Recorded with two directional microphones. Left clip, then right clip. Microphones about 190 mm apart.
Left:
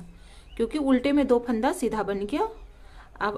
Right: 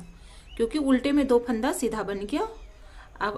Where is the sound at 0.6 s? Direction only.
15° left (ahead or behind).